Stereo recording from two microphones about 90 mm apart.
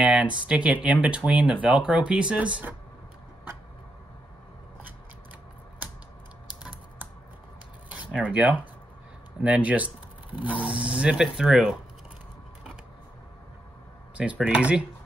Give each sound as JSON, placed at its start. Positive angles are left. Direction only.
{"t": 0.0, "sound": "speech", "side_deg": -10}
{"t": 7.9, "sound": "speech", "side_deg": -15}
{"t": 14.1, "sound": "speech", "side_deg": -15}